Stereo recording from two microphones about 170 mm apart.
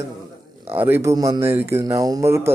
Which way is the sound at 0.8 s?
10° right (ahead or behind).